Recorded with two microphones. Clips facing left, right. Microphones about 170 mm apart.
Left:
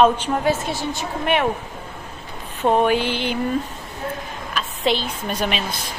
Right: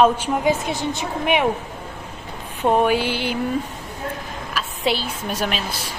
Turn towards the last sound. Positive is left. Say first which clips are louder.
# left 1 dB
turn(degrees=-5)  # may be behind; listen again after turning